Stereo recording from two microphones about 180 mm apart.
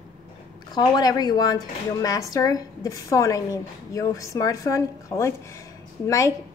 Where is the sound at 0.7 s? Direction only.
20° left (ahead or behind).